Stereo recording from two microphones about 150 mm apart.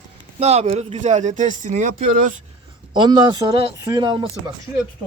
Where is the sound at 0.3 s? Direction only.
45° right (ahead or behind); by 2.3 s 60° right (ahead or behind).